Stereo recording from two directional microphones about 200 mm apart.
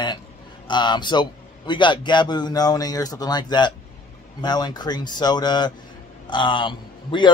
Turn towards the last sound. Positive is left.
turn(degrees=25)  # may be behind; listen again after turning